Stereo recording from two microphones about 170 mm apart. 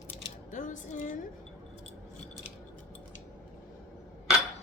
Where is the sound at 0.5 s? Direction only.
45° left (ahead or behind).